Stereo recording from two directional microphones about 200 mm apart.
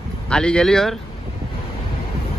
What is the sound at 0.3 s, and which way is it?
Speech, 5° left (ahead or behind).